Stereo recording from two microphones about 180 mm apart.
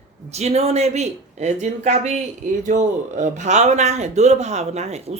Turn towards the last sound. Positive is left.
turn(degrees=-35)  # may be behind; listen again after turning